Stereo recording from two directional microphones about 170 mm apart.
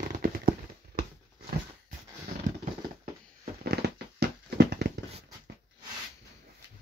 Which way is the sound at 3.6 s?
70° right (ahead or behind).